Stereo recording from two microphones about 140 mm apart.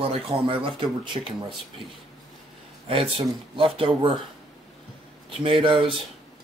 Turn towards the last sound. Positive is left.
turn(degrees=-40)  # may be behind; listen again after turning